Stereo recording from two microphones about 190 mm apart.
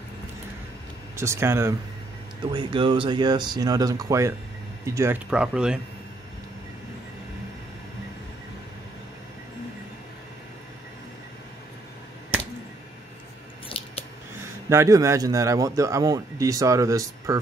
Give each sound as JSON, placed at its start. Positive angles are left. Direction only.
{"t": 1.1, "sound": "a man's voice", "side_deg": -15}
{"t": 2.5, "sound": "speech", "side_deg": -25}
{"t": 13.7, "sound": "biting", "side_deg": 30}
{"t": 14.7, "sound": "a man's voice", "side_deg": -15}